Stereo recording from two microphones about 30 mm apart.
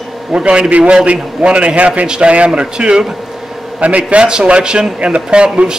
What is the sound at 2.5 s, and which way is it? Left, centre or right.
Speech, right.